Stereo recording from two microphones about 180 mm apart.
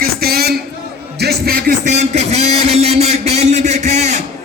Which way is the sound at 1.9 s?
40° right (ahead or behind).